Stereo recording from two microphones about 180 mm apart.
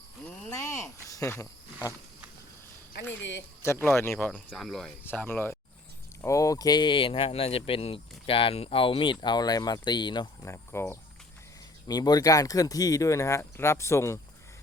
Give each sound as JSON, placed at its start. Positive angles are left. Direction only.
{"t": 0.5, "sound": "wild animals", "side_deg": 15}
{"t": 3.1, "sound": "speech", "side_deg": 85}
{"t": 3.6, "sound": "speech", "side_deg": 15}
{"t": 4.3, "sound": "speech", "side_deg": 0}
{"t": 10.4, "sound": "speech", "side_deg": 15}